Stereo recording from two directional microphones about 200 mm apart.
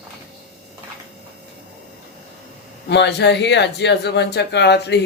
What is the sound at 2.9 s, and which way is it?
Speech, 60° left (ahead or behind).